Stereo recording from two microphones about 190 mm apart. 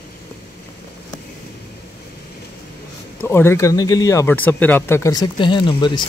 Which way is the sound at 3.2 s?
10° left (ahead or behind).